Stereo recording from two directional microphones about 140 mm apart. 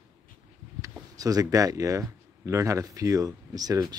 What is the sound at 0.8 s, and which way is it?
Speech, 25° right (ahead or behind).